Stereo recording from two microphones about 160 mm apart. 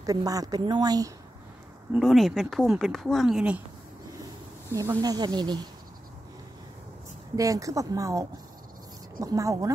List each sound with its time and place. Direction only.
0.0 s a woman's voice: 25° right (ahead or behind)
1.9 s speech: centre (ahead or behind)
4.6 s a woman's voice: 20° right (ahead or behind)
7.3 s a woman's voice: 20° right (ahead or behind)